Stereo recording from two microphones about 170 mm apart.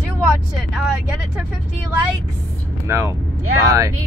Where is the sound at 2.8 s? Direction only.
15° right (ahead or behind).